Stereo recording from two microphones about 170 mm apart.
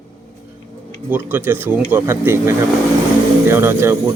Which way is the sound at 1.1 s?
10° right (ahead or behind).